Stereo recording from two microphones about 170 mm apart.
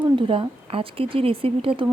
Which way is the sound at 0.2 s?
30° right (ahead or behind).